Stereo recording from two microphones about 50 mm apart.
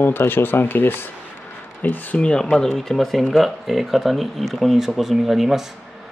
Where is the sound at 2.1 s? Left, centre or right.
Left.